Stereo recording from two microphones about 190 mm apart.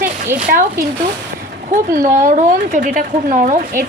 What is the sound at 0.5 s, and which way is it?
Speech, 50° right (ahead or behind).